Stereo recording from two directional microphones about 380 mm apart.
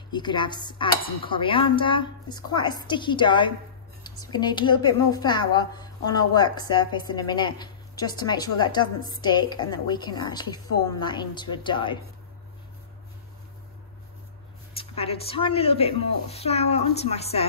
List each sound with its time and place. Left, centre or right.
0.1 s a woman's voice: centre
14.8 s a woman's voice: centre